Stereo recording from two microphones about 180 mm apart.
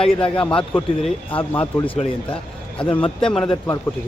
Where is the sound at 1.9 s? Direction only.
30° left (ahead or behind).